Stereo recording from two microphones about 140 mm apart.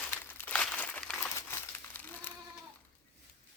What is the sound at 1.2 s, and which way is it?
Crumpling, 20° left (ahead or behind).